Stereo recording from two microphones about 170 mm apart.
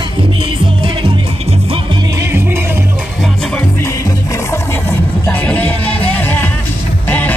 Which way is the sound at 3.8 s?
15° left (ahead or behind).